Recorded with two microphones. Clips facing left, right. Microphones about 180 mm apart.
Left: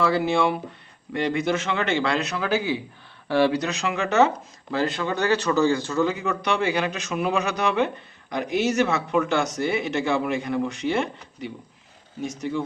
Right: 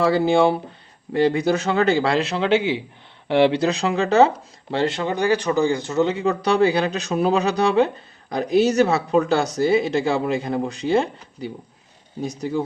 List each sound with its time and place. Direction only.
0.0 s speech: 35° right (ahead or behind)
5.1 s speech: 10° right (ahead or behind); by 12.6 s 35° right (ahead or behind)